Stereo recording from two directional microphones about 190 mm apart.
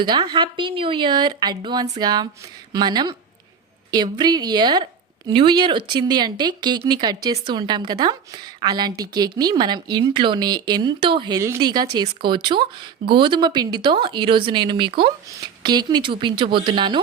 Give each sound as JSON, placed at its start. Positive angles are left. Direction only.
{"t": 0.0, "sound": "a woman's voice", "side_deg": -20}